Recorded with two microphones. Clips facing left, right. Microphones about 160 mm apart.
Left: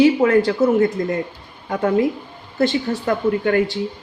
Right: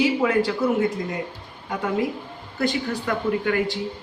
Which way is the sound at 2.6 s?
30° left (ahead or behind).